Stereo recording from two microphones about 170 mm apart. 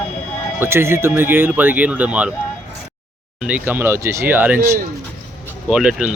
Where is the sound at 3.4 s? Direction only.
10° right (ahead or behind).